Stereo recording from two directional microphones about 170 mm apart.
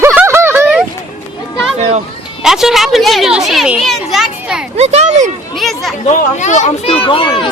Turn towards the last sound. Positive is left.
turn(degrees=30)  # may be behind; listen again after turning